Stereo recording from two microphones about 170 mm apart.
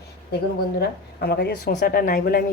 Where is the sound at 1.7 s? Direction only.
60° left (ahead or behind).